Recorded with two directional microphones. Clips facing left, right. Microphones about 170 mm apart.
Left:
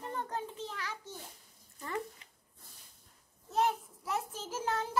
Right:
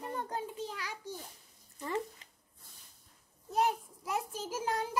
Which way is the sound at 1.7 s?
25° right (ahead or behind).